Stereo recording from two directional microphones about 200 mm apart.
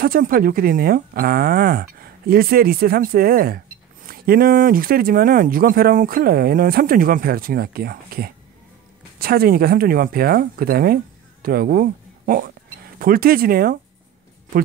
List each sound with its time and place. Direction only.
0.0 s speech: 45° right (ahead or behind)